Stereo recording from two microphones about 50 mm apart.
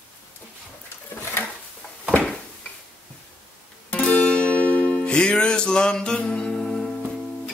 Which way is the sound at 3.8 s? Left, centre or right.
Left.